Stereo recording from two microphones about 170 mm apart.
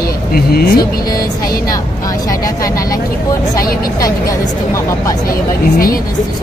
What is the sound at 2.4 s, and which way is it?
Speech, 20° left (ahead or behind).